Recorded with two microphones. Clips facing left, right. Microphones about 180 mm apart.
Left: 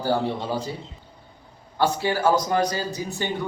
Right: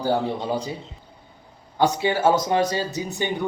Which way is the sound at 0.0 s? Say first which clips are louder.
Right 1 dB; 15° right (ahead or behind).